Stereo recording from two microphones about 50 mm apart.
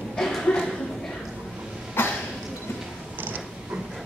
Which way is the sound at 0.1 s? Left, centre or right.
Centre.